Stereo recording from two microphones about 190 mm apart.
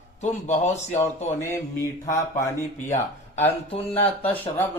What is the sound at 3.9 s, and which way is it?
Speech, 10° left (ahead or behind).